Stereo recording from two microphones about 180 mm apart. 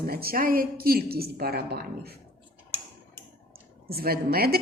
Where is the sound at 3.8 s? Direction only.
60° right (ahead or behind).